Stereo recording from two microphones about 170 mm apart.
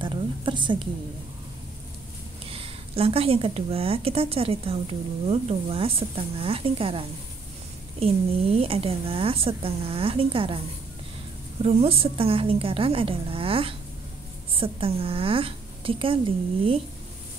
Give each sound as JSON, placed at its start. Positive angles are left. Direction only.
{"t": 0.0, "sound": "a sound", "side_deg": -30}
{"t": 2.4, "sound": "a woman's voice", "side_deg": -35}
{"t": 11.6, "sound": "a woman's voice", "side_deg": -35}